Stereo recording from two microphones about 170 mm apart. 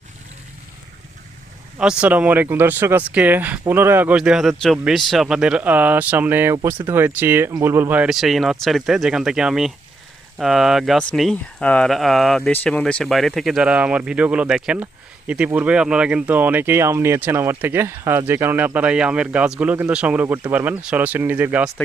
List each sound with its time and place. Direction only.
1.8 s speech: 5° right (ahead or behind)